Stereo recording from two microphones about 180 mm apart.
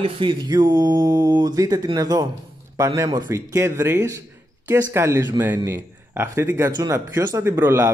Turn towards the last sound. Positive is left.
turn(degrees=-15)  # may be behind; listen again after turning